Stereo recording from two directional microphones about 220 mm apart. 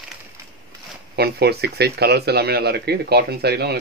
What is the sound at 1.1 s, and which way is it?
Speech, 45° right (ahead or behind).